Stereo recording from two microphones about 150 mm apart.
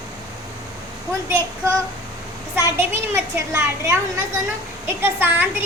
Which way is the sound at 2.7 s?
15° right (ahead or behind).